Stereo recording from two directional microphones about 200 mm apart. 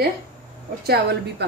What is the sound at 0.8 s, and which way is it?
Speech, 55° right (ahead or behind).